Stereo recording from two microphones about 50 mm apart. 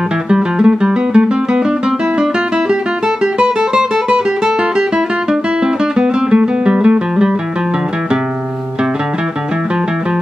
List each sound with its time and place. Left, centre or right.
0.3 s guitar: centre
3.3 s music: centre
5.9 s music: centre